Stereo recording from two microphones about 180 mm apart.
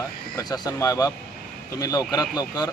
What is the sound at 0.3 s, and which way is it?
Speech, 20° left (ahead or behind).